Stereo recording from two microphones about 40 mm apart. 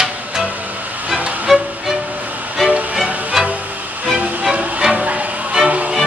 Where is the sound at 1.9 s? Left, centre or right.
Right.